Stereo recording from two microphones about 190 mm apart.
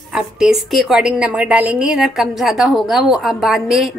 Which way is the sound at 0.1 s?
Centre (ahead or behind).